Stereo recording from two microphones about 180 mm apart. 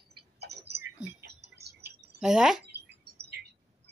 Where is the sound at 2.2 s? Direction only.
5° right (ahead or behind).